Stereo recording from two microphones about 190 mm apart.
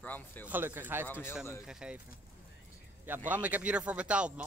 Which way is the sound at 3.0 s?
10° right (ahead or behind).